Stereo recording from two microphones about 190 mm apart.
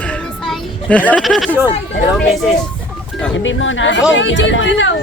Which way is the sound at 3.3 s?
85° left.